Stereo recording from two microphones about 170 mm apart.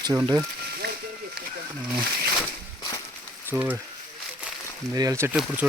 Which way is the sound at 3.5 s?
10° right (ahead or behind).